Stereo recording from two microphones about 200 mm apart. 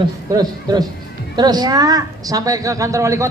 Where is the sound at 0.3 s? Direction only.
20° right (ahead or behind).